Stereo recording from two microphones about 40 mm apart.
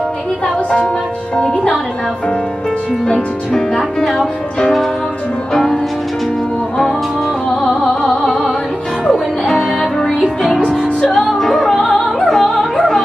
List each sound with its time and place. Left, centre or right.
3.1 s speech: centre
5.5 s music: centre
7.8 s music: centre
11.1 s music: centre